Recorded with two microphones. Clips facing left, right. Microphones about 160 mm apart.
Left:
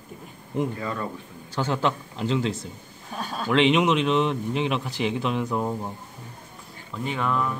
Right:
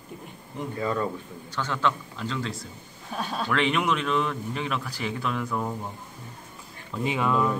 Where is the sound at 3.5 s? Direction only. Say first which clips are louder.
Left 6 dB; 25° left (ahead or behind).